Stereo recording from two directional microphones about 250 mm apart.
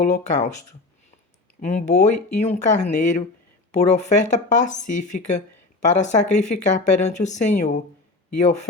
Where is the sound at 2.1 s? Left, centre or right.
Left.